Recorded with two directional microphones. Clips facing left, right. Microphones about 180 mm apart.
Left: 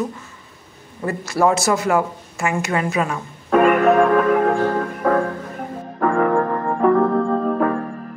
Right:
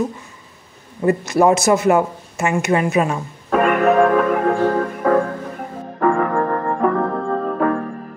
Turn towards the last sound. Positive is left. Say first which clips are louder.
# even
turn(degrees=0)  # may be behind; listen again after turning